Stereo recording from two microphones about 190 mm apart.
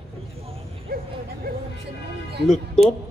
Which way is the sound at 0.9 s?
50° right (ahead or behind).